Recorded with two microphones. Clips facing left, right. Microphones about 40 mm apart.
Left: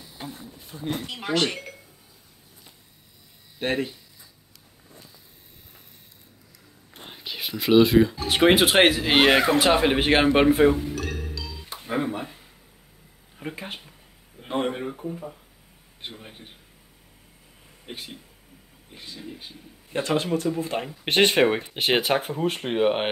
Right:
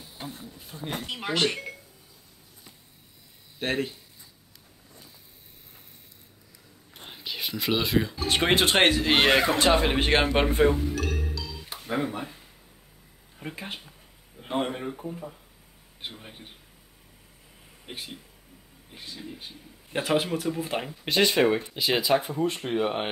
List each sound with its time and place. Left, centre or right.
0.2 s speech: centre
3.5 s speech: centre
7.0 s speech: centre
11.9 s speech: centre
13.4 s speech: centre
14.4 s a sound: centre
14.7 s speech: centre
17.8 s speech: centre
19.9 s speech: centre
21.0 s speech: left
22.3 s speech: left